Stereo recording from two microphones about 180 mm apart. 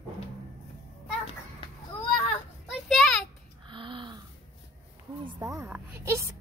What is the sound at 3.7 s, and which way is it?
Gasp, 25° right (ahead or behind).